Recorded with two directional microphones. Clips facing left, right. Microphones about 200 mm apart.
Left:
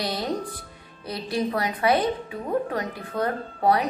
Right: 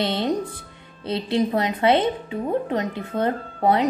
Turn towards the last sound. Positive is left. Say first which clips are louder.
# right 2 dB
turn(degrees=-20)  # may be behind; listen again after turning